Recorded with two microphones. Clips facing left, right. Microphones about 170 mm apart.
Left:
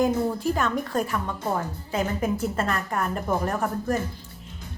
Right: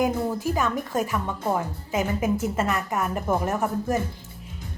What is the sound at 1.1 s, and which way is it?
A woman's voice, 15° right (ahead or behind).